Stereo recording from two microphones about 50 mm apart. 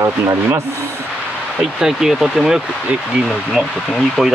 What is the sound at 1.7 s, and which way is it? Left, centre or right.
Speech, centre.